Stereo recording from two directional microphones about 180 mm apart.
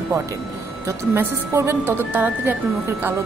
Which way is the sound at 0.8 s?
15° right (ahead or behind).